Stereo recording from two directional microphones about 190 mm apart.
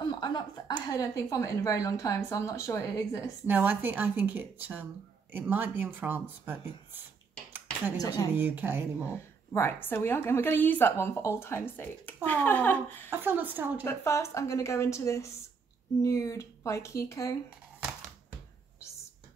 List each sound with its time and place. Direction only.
0.2 s a woman's voice: 20° left (ahead or behind)
3.4 s speech: 10° right (ahead or behind)
8.0 s speech: 20° left (ahead or behind)
8.4 s speech: 10° right (ahead or behind)
9.0 s a woman's voice: 15° left (ahead or behind)
13.1 s speech: 10° right (ahead or behind)
13.8 s a woman's voice: 15° left (ahead or behind)